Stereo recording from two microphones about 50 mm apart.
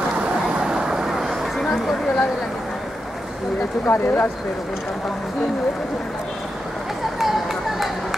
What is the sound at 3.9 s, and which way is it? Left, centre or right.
Speech, left.